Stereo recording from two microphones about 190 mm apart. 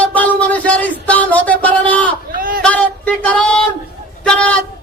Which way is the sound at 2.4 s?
50° right (ahead or behind).